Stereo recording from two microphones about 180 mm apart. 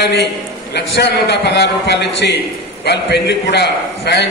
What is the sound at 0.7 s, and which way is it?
A man's voice, 70° left (ahead or behind).